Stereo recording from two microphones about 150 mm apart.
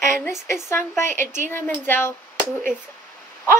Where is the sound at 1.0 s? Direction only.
15° left (ahead or behind).